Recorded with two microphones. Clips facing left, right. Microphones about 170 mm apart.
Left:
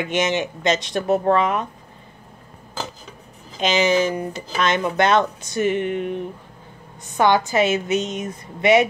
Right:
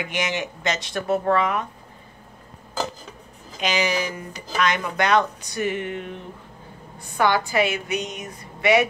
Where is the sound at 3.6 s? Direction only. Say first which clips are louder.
Left 6 dB; 25° left (ahead or behind).